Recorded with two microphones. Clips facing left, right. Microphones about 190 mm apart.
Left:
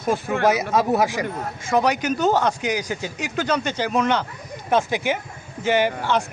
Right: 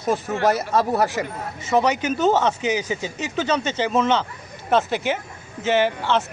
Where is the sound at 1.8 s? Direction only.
10° left (ahead or behind).